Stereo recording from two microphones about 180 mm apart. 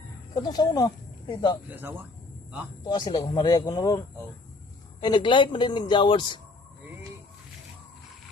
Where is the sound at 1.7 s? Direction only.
10° right (ahead or behind).